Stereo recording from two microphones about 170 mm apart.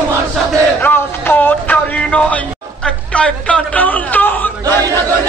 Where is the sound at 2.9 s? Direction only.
5° left (ahead or behind).